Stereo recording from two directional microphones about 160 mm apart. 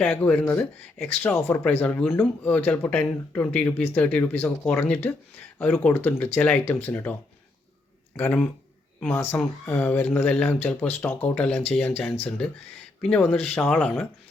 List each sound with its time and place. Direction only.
0.0 s speech: 5° left (ahead or behind)
13.0 s speech: 5° left (ahead or behind)